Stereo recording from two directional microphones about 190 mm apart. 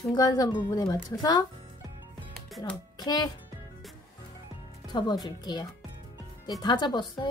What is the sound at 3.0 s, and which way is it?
Speech, 20° left (ahead or behind).